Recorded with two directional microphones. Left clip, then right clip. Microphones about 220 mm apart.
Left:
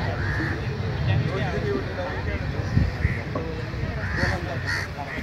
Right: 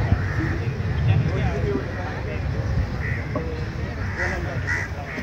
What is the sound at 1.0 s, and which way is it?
Vehicle, 40° left (ahead or behind).